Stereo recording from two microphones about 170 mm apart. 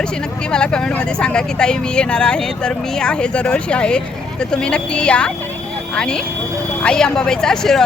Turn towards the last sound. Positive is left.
turn(degrees=5)  # may be behind; listen again after turning